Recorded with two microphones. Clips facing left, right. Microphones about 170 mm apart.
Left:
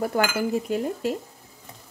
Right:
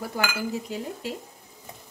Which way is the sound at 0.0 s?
55° left (ahead or behind).